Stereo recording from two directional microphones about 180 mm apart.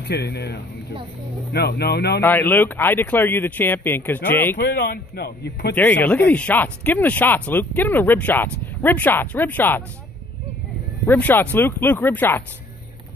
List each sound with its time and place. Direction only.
0.1 s a man's voice: 65° left (ahead or behind)
2.2 s speech: 10° left (ahead or behind)
4.6 s a man's voice: 60° left (ahead or behind)
5.8 s speech: 10° left (ahead or behind)
11.1 s speech: 10° left (ahead or behind)